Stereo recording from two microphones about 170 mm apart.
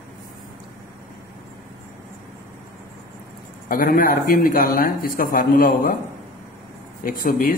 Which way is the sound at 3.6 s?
55° left (ahead or behind).